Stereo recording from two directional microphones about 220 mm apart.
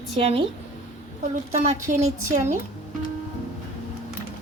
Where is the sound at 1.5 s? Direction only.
30° right (ahead or behind).